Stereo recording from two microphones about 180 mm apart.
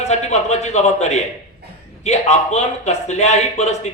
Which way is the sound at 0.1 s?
40° left (ahead or behind).